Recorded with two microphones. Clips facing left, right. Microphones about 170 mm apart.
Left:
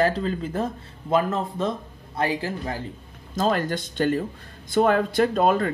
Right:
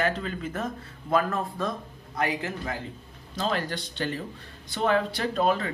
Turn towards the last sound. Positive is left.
turn(degrees=50)  # may be behind; listen again after turning